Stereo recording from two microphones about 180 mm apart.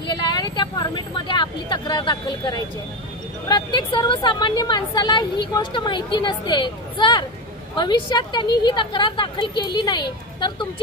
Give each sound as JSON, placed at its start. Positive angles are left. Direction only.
{"t": 0.0, "sound": "vehicle", "side_deg": 25}
{"t": 3.4, "sound": "a woman's voice", "side_deg": 25}